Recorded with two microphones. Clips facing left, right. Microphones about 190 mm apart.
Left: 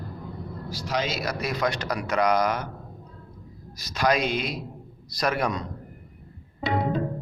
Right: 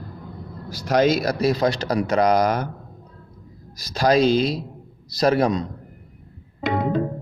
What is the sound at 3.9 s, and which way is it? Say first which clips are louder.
A man's voice: right 7 dB; 30° right (ahead or behind).